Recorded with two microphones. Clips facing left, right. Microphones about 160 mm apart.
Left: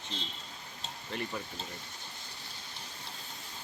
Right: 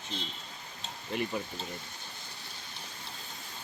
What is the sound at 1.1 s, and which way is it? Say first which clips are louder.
Speech: right 5 dB; 10° right (ahead or behind).